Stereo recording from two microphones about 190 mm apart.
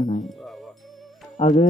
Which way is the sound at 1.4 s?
35° left (ahead or behind).